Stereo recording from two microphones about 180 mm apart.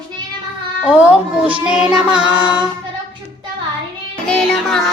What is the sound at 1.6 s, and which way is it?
A woman's voice, 5° right (ahead or behind).